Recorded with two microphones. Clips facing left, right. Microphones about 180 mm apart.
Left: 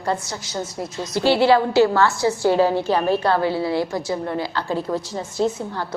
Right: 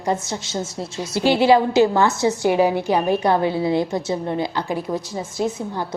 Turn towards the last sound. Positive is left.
turn(degrees=-15)  # may be behind; listen again after turning